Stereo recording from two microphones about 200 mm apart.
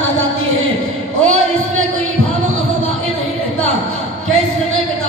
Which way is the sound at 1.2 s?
90° right.